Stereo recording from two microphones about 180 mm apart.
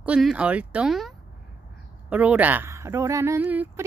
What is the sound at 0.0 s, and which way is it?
A woman's voice, 5° right (ahead or behind).